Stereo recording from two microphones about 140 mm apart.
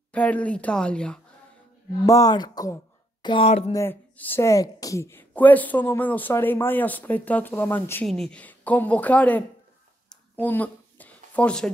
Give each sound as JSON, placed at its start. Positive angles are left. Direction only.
{"t": 0.1, "sound": "a woman's voice", "side_deg": 10}
{"t": 2.0, "sound": "speech", "side_deg": 25}
{"t": 3.7, "sound": "a woman's voice", "side_deg": 15}
{"t": 10.3, "sound": "a sound", "side_deg": 10}